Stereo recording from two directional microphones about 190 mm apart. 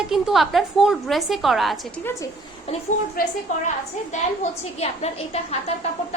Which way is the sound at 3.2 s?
50° left (ahead or behind).